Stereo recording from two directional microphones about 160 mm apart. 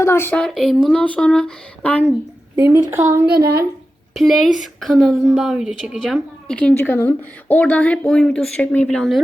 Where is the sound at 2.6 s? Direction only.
15° right (ahead or behind).